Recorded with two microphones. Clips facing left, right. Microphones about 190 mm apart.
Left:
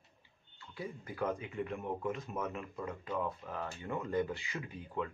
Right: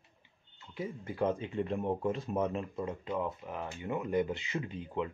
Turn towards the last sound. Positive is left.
turn(degrees=-20)  # may be behind; listen again after turning